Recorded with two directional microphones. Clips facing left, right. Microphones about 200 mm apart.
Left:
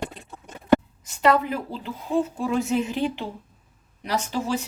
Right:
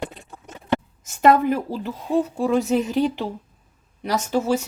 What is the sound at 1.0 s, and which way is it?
A woman's voice, 50° right (ahead or behind).